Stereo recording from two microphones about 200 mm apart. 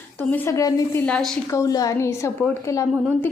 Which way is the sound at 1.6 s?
20° left (ahead or behind).